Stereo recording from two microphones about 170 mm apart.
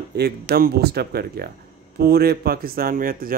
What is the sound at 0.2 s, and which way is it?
Speech, 65° right (ahead or behind).